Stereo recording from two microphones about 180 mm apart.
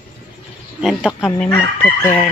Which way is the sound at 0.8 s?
Centre (ahead or behind).